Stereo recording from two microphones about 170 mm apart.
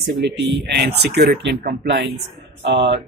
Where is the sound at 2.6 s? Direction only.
85° right.